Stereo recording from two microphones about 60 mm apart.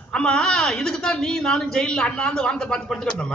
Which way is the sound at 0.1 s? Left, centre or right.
Centre.